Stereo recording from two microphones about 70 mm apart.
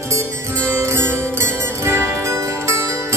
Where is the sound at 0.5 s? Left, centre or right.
Centre.